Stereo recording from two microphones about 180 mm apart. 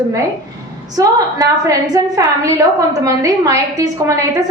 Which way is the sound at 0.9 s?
20° right (ahead or behind).